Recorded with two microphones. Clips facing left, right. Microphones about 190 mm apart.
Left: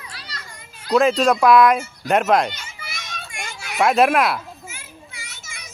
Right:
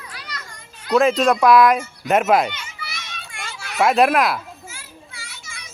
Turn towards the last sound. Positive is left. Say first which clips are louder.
# even
turn(degrees=20)  # may be behind; listen again after turning